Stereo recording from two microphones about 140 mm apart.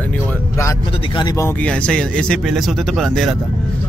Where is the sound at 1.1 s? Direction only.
25° left (ahead or behind).